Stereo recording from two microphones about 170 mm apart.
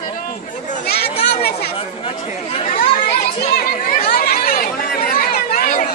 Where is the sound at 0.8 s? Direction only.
70° left (ahead or behind).